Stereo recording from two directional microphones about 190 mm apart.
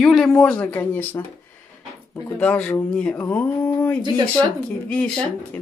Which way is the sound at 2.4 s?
5° left (ahead or behind).